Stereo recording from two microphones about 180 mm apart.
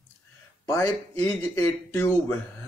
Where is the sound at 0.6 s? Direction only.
15° left (ahead or behind).